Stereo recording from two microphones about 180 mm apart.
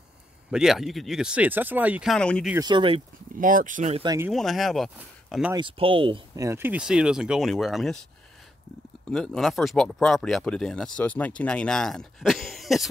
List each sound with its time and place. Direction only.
0.5 s speech: 5° right (ahead or behind)
2.1 s speech: 5° left (ahead or behind)
2.6 s speech: 25° right (ahead or behind)
3.3 s speech: 50° right (ahead or behind)
4.0 s speech: 20° right (ahead or behind)
4.3 s speech: centre (ahead or behind)
5.5 s speech: 30° right (ahead or behind); by 8.0 s centre (ahead or behind)
9.0 s speech: 5° left (ahead or behind)